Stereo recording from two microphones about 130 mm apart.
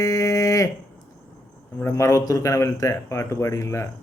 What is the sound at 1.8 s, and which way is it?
Speech, 20° left (ahead or behind).